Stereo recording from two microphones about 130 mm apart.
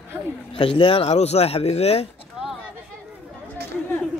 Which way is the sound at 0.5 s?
40° left (ahead or behind).